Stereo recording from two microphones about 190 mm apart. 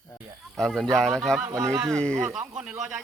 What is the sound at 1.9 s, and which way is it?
Speech, 5° left (ahead or behind).